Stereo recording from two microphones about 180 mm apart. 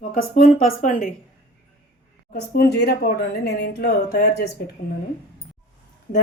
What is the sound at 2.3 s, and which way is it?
Speech, 60° left (ahead or behind).